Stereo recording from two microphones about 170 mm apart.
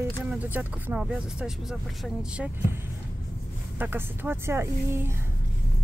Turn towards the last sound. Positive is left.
turn(degrees=-15)  # may be behind; listen again after turning